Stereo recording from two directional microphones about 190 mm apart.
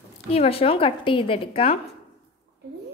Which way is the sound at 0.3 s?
30° left (ahead or behind).